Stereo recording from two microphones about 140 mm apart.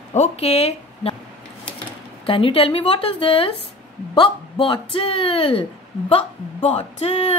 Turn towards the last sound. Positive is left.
turn(degrees=50)  # may be behind; listen again after turning